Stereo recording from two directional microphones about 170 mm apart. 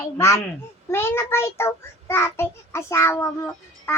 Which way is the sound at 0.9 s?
15° left (ahead or behind).